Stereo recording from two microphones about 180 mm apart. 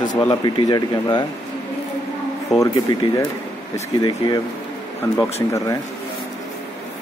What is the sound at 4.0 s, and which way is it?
Speech, 25° left (ahead or behind).